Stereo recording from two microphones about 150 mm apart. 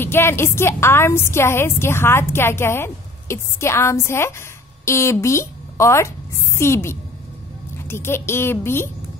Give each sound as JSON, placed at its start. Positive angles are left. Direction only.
{"t": 0.0, "sound": "a woman's voice", "side_deg": 15}